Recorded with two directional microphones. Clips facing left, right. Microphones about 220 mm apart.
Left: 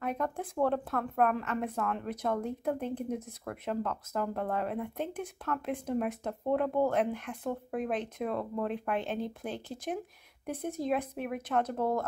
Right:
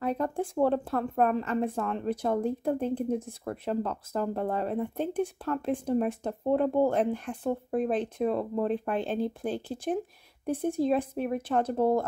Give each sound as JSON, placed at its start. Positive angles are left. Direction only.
{"t": 0.0, "sound": "speech", "side_deg": -30}